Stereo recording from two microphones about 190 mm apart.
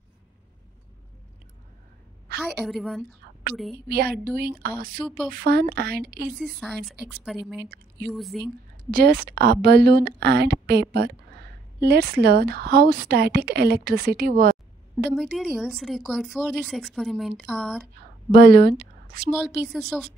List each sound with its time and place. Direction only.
2.3 s a sound: 55° right (ahead or behind)
2.6 s a woman's voice: centre (ahead or behind)
4.4 s speech: 55° right (ahead or behind)
5.0 s a woman's voice: centre (ahead or behind)
5.3 s a woman's voice: 55° right (ahead or behind)
6.3 s a woman's voice: centre (ahead or behind)
8.9 s a woman's voice: 55° right (ahead or behind)
15.1 s a woman's voice: centre (ahead or behind)
18.3 s speech: 55° right (ahead or behind)
19.6 s a woman's voice: centre (ahead or behind)